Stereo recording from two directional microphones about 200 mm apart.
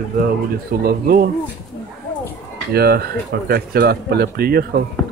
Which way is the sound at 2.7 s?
50° right (ahead or behind).